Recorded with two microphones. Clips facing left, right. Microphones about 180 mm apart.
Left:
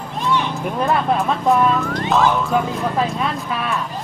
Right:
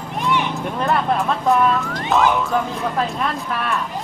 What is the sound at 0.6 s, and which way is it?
Speech, centre (ahead or behind).